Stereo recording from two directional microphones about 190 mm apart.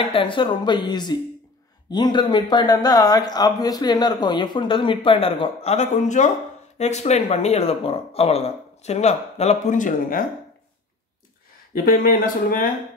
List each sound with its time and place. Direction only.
0.1 s speech: 25° left (ahead or behind); by 10.2 s 45° left (ahead or behind)
11.7 s speech: 50° left (ahead or behind)